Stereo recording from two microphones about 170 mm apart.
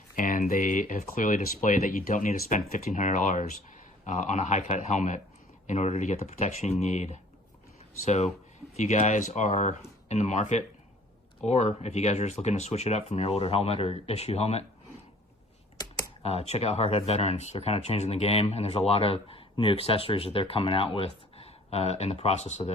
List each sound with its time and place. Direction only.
0.2 s speech: 55° left (ahead or behind); by 14.6 s 35° left (ahead or behind)
16.2 s speech: 35° left (ahead or behind)